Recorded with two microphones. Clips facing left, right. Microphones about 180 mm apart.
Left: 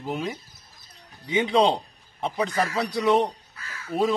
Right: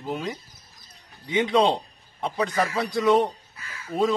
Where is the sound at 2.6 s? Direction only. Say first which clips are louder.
Right 1 dB; centre (ahead or behind).